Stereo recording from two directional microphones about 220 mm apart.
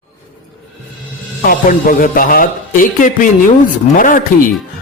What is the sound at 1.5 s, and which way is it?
Speech, 40° left (ahead or behind).